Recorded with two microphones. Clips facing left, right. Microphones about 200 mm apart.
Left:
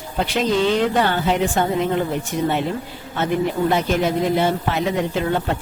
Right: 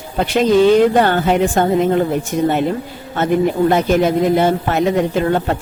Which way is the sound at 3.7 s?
50° right (ahead or behind).